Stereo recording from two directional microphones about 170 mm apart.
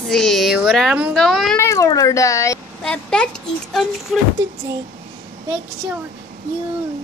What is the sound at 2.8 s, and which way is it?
A woman's voice, 5° left (ahead or behind).